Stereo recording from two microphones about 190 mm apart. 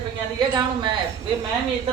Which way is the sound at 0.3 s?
20° right (ahead or behind).